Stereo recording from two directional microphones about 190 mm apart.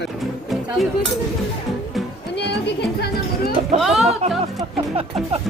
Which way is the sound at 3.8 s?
Centre (ahead or behind).